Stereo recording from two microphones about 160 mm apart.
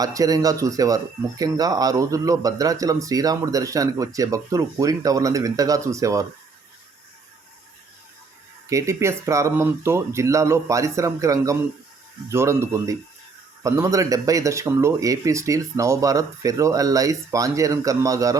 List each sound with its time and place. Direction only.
0.0 s speech: 20° right (ahead or behind)
8.7 s speech: 15° right (ahead or behind)